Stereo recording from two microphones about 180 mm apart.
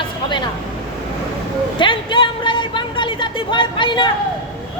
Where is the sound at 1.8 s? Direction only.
25° left (ahead or behind).